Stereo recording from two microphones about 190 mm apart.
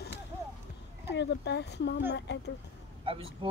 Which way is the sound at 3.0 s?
30° right (ahead or behind).